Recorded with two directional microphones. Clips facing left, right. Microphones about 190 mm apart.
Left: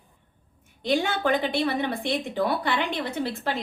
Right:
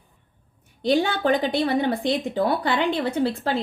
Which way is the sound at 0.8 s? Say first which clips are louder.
Right 4 dB; 35° right (ahead or behind).